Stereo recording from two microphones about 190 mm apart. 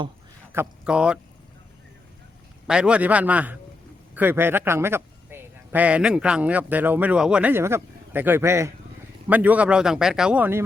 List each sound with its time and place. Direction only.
0.5 s a man's voice: 10° right (ahead or behind)
2.6 s a man's voice: 5° right (ahead or behind)